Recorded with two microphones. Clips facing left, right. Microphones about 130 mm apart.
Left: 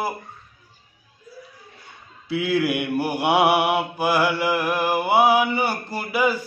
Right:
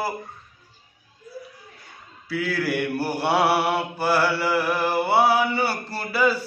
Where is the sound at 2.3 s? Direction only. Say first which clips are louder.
Left 3 dB; 20° left (ahead or behind).